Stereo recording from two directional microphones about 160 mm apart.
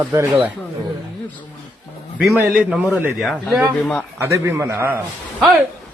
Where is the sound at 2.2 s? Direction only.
Centre (ahead or behind).